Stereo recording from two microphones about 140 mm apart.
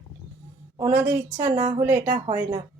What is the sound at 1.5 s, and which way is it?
Speech, 50° right (ahead or behind).